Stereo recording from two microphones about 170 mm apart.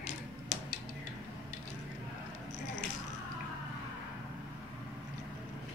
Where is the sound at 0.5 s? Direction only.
40° left (ahead or behind).